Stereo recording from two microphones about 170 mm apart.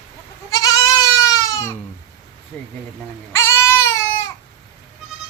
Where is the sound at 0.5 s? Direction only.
20° left (ahead or behind).